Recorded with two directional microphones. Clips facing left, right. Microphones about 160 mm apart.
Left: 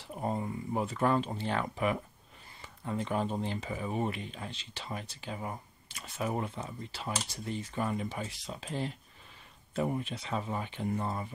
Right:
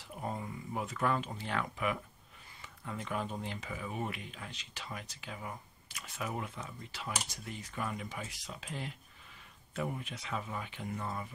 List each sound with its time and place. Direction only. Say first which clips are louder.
0.0 s speech: left 6 dB; 30° left (ahead or behind)